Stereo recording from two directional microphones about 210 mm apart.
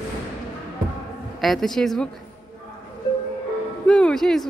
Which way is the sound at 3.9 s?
5° left (ahead or behind).